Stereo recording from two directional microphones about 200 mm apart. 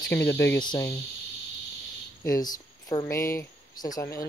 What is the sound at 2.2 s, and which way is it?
Speech, 15° left (ahead or behind).